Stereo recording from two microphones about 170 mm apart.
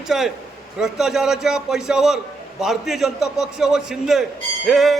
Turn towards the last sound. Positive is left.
turn(degrees=0)  # may be behind; listen again after turning